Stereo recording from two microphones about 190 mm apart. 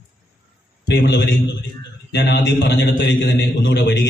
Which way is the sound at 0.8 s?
60° left (ahead or behind).